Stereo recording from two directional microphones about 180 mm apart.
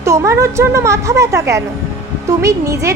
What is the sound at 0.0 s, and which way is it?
A woman's voice, 15° right (ahead or behind).